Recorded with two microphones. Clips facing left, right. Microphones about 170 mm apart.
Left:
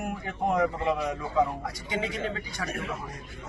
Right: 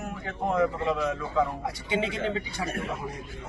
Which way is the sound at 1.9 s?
25° right (ahead or behind).